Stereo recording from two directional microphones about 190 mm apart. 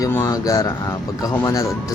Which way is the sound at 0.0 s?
15° left (ahead or behind).